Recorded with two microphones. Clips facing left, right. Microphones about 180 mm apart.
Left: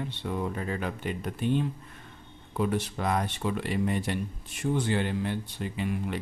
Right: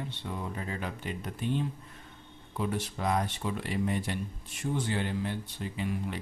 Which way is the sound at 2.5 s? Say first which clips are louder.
Left 4 dB; 65° left (ahead or behind).